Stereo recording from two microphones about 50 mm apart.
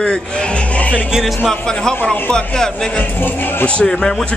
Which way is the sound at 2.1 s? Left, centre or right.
Centre.